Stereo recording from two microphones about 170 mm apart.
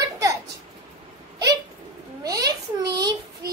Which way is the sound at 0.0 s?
20° right (ahead or behind).